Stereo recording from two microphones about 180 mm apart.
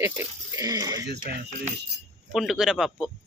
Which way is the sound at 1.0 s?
65° right (ahead or behind).